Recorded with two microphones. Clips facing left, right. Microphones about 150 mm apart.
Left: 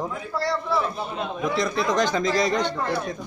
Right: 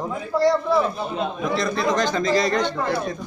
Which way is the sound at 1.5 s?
15° left (ahead or behind).